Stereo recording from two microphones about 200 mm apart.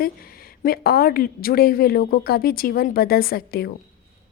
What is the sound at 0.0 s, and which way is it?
A woman's voice, 45° left (ahead or behind).